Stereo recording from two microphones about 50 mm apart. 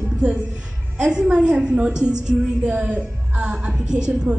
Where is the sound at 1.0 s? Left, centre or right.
Centre.